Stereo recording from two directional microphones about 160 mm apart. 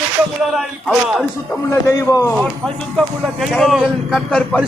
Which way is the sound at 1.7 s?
20° left (ahead or behind).